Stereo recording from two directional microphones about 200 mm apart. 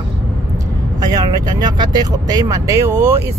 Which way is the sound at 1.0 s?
20° right (ahead or behind).